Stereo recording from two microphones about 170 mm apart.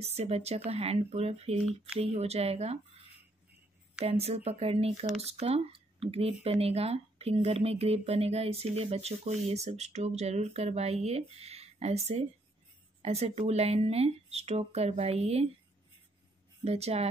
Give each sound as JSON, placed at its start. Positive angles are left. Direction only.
{"t": 0.0, "sound": "speech", "side_deg": -40}
{"t": 4.0, "sound": "speech", "side_deg": -35}
{"t": 16.6, "sound": "speech", "side_deg": -35}